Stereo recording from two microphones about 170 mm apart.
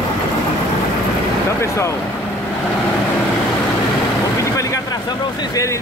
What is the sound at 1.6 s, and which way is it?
Speech, 15° left (ahead or behind).